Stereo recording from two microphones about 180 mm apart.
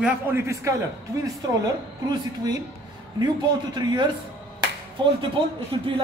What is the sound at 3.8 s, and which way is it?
Speech, 20° right (ahead or behind).